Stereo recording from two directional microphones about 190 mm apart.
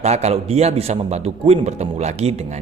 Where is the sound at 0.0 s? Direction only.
35° right (ahead or behind).